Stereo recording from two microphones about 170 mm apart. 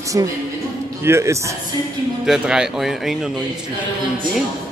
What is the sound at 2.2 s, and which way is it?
A man's voice, 5° right (ahead or behind).